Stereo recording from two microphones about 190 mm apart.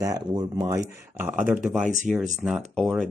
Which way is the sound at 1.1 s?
10° right (ahead or behind).